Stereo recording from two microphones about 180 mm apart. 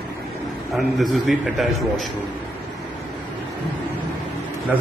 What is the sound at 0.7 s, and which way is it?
A man's voice, centre (ahead or behind).